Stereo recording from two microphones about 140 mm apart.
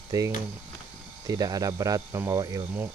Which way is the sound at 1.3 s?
25° right (ahead or behind).